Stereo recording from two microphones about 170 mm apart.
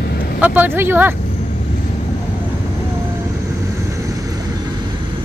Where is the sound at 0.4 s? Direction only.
10° right (ahead or behind).